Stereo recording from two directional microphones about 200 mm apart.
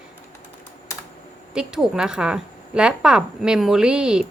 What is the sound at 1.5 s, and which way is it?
A woman's voice, 5° right (ahead or behind).